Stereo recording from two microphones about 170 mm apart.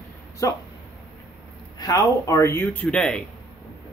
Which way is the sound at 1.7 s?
20° left (ahead or behind).